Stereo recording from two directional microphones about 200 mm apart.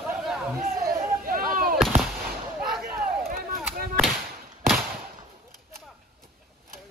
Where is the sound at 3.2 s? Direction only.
45° right (ahead or behind).